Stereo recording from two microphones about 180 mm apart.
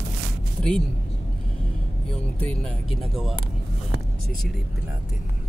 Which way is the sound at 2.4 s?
Centre (ahead or behind).